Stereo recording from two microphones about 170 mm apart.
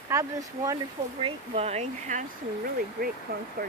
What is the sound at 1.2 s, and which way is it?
Speech, 40° right (ahead or behind).